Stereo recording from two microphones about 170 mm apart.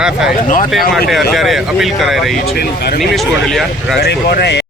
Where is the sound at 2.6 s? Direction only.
70° left (ahead or behind).